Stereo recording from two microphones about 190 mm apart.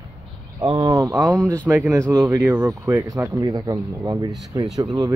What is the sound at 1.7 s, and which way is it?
Speech, 10° right (ahead or behind).